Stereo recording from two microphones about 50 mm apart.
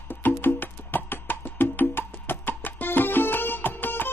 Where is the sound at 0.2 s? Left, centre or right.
Left.